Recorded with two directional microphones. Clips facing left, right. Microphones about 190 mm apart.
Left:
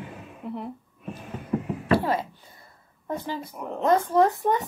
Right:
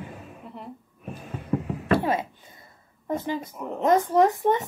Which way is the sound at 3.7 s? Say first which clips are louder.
Right 1 dB; 15° right (ahead or behind).